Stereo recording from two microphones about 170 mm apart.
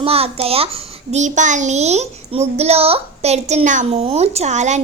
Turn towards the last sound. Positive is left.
turn(degrees=-45)  # may be behind; listen again after turning